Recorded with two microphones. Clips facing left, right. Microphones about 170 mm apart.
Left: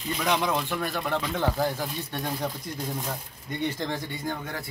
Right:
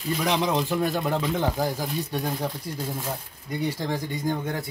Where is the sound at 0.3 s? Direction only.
30° right (ahead or behind).